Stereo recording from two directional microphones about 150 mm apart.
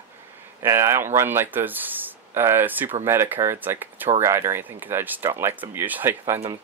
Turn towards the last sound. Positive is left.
turn(degrees=-15)  # may be behind; listen again after turning